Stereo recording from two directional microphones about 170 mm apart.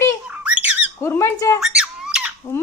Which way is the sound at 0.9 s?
15° left (ahead or behind).